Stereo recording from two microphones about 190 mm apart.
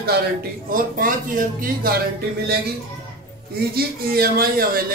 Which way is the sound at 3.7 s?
50° right (ahead or behind).